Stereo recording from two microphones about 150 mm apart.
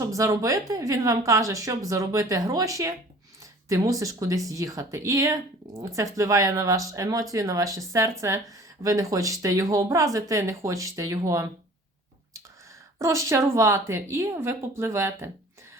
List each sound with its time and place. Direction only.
0.0 s speech: 20° right (ahead or behind)
13.0 s speech: 20° right (ahead or behind)